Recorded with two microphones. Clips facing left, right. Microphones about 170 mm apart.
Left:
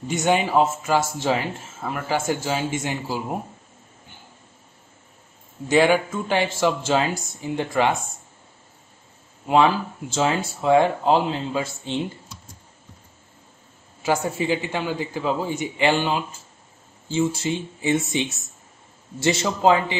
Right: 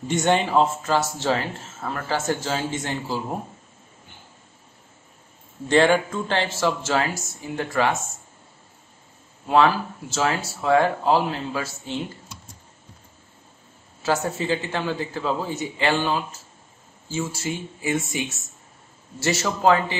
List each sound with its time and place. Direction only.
0.1 s speech: 5° left (ahead or behind)
5.7 s speech: 10° left (ahead or behind)
9.5 s speech: 15° left (ahead or behind)
14.0 s speech: 10° left (ahead or behind)